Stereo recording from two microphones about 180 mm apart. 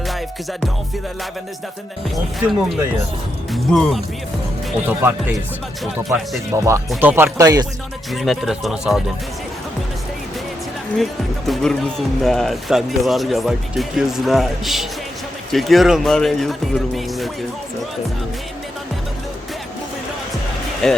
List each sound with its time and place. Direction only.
2.0 s speech: centre (ahead or behind)
4.9 s speech: 10° right (ahead or behind)
6.5 s speech: 15° right (ahead or behind)
8.1 s speech: centre (ahead or behind)
10.9 s speech: centre (ahead or behind)
20.8 s speech: 5° left (ahead or behind)